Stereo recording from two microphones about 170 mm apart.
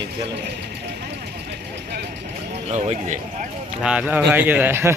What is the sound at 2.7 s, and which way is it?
Speech, 40° right (ahead or behind).